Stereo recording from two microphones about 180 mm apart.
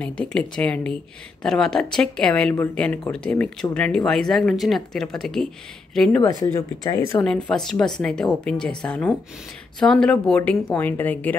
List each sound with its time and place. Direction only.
0.0 s a woman's voice: 5° left (ahead or behind)
6.4 s a woman's voice: 20° left (ahead or behind)